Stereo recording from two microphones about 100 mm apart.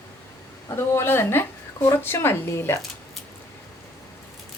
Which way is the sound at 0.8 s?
25° left (ahead or behind).